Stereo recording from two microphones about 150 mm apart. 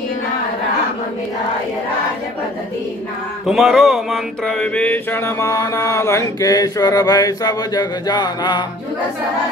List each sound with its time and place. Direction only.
3.4 s mantra: centre (ahead or behind); by 8.6 s 30° left (ahead or behind)